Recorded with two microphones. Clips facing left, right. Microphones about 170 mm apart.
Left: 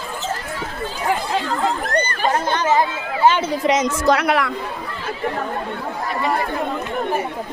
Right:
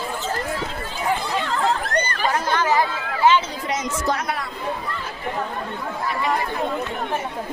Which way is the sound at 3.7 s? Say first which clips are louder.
Left 7 dB; 90° left.